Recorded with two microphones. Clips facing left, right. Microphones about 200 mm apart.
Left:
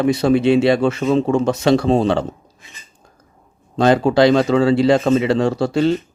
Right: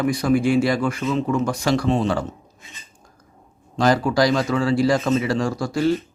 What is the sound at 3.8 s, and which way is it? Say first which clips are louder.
Speech: left 5 dB; 25° left (ahead or behind).